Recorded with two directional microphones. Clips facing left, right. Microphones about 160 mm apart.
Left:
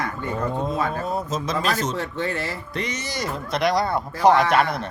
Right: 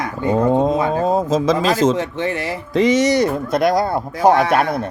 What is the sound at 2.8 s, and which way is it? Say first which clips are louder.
Speech: right 16 dB; 90° right.